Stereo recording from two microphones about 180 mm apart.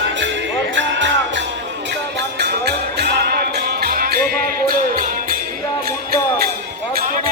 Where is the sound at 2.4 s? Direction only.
65° right (ahead or behind).